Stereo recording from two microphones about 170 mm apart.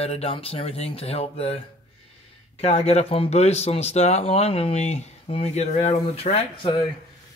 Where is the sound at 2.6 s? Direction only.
35° left (ahead or behind).